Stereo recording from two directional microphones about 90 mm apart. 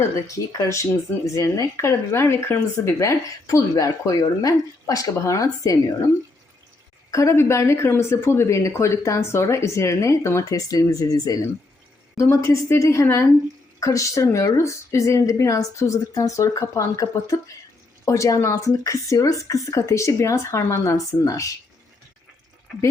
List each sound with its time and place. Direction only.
0.0 s speech: 40° left (ahead or behind)
7.1 s speech: 35° left (ahead or behind)